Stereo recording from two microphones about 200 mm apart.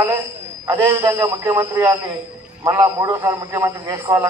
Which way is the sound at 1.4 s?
10° right (ahead or behind).